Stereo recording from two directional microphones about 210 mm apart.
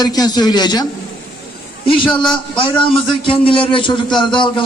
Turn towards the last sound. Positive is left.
turn(degrees=20)  # may be behind; listen again after turning